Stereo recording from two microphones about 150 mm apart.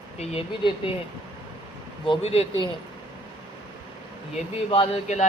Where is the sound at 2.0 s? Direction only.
40° left (ahead or behind).